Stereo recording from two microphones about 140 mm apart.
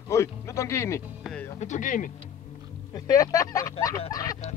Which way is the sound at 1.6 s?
60° left (ahead or behind).